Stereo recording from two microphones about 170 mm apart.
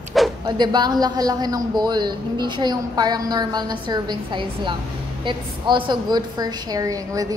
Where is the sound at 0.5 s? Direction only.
25° right (ahead or behind).